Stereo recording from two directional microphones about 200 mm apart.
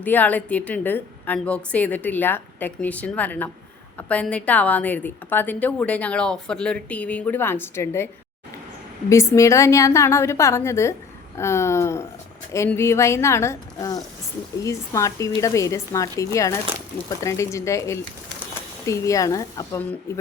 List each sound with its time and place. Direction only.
0.0 s a woman's voice: 10° left (ahead or behind)